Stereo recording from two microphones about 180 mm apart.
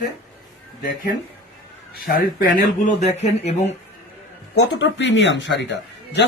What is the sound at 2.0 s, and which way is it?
Speech, 50° left (ahead or behind).